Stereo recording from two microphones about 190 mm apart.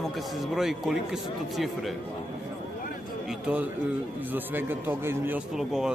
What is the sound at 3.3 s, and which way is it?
A man's voice, 5° right (ahead or behind).